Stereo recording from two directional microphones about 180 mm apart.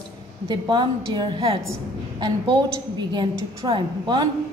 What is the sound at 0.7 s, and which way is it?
A woman's voice, 25° right (ahead or behind).